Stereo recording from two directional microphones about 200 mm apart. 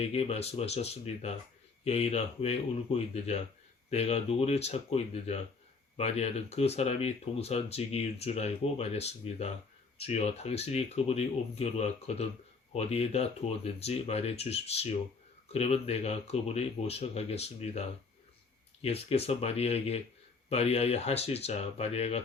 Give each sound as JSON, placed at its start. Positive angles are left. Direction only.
{"t": 0.0, "sound": "speech", "side_deg": 30}